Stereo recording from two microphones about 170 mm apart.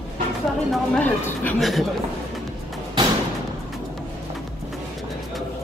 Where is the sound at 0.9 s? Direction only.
10° left (ahead or behind).